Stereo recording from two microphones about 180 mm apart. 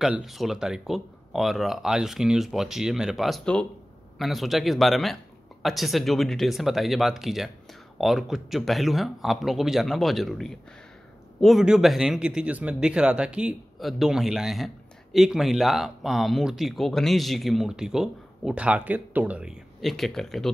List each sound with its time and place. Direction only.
0.0 s speech: centre (ahead or behind)